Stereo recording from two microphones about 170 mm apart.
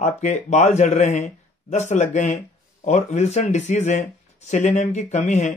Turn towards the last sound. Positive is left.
turn(degrees=40)  # may be behind; listen again after turning